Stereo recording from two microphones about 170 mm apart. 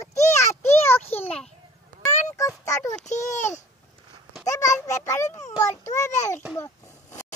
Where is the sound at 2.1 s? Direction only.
45° left (ahead or behind).